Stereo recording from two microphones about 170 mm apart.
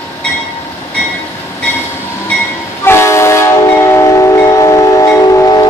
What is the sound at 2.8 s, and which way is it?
Train, 15° left (ahead or behind).